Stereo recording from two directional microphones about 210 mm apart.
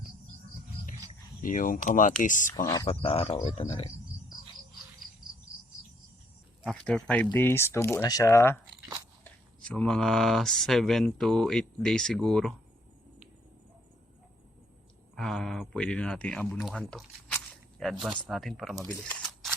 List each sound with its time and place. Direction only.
1.4 s speech: 40° left (ahead or behind)
6.7 s speech: 5° left (ahead or behind)
15.1 s speech: 5° left (ahead or behind)
19.0 s camera: centre (ahead or behind)